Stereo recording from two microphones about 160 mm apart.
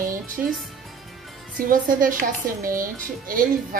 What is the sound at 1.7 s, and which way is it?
Speech, 60° right (ahead or behind).